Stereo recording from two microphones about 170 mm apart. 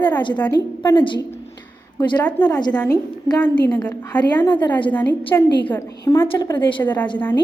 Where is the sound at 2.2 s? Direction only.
10° left (ahead or behind).